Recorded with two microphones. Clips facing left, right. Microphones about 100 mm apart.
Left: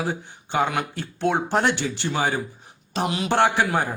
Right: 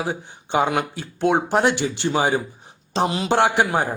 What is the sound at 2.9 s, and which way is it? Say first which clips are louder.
Speech: right 4 dB; 30° right (ahead or behind).